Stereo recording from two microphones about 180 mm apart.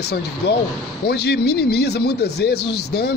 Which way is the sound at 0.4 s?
65° left (ahead or behind).